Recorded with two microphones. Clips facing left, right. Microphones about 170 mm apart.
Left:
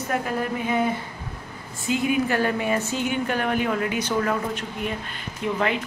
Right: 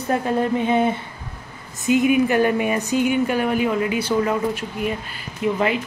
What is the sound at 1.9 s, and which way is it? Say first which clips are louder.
A woman's voice: right 6 dB; 15° right (ahead or behind).